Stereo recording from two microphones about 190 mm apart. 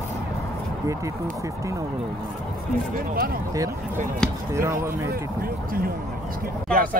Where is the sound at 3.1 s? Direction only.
50° right (ahead or behind).